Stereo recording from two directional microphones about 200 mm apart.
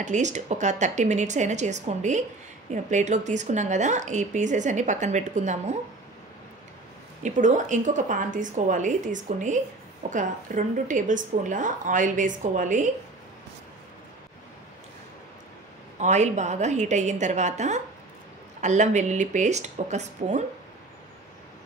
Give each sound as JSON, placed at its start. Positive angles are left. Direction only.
{"t": 0.0, "sound": "a woman's voice", "side_deg": -35}
{"t": 7.2, "sound": "a woman's voice", "side_deg": -40}
{"t": 16.0, "sound": "a woman's voice", "side_deg": -35}